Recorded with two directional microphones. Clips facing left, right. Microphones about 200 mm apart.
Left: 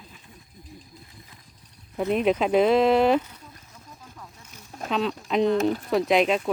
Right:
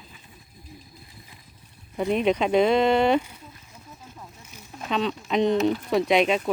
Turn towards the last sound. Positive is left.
turn(degrees=0)  # may be behind; listen again after turning